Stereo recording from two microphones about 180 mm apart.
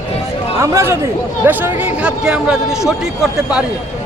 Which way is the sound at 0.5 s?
15° right (ahead or behind).